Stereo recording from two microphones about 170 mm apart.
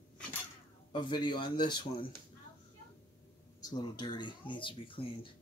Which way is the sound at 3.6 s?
25° left (ahead or behind).